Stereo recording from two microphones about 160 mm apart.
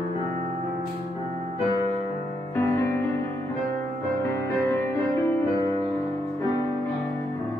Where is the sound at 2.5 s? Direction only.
15° left (ahead or behind).